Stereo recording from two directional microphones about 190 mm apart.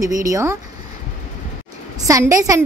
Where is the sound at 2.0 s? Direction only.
15° right (ahead or behind).